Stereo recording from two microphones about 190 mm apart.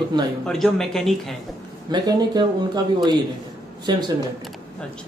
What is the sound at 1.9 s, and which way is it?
A man's voice, 20° right (ahead or behind).